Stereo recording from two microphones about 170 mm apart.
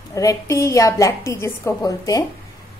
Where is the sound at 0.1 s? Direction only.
20° left (ahead or behind).